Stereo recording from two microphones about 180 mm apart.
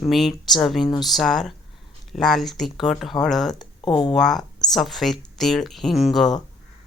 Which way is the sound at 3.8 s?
25° left (ahead or behind).